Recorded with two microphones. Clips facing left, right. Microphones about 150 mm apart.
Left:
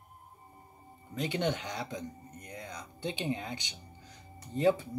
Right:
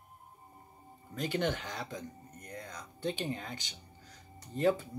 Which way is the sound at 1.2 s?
20° left (ahead or behind).